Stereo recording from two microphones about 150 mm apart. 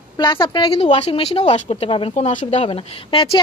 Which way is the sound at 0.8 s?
45° left (ahead or behind).